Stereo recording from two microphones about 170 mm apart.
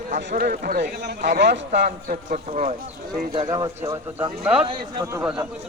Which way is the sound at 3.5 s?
25° right (ahead or behind).